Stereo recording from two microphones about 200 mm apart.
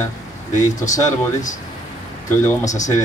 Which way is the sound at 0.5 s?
40° left (ahead or behind).